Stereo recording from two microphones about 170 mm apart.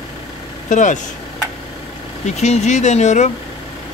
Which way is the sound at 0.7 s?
45° left (ahead or behind).